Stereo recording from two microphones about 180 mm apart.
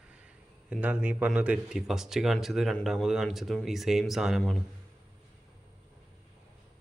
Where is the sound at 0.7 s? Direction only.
10° right (ahead or behind).